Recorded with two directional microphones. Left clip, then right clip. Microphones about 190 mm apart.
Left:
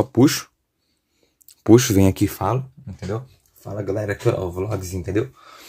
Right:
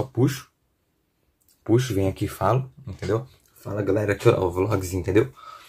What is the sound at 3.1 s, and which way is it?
Speech, centre (ahead or behind).